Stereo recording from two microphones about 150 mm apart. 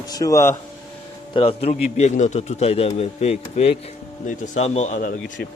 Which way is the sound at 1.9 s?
50° left (ahead or behind).